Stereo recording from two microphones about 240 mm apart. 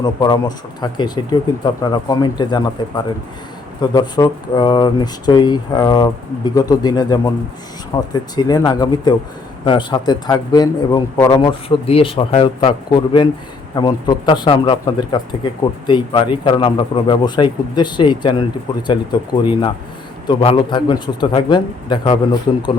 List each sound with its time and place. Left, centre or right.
0.0 s a man's voice: centre